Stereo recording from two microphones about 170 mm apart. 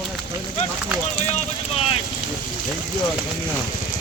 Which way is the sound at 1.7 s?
35° left (ahead or behind).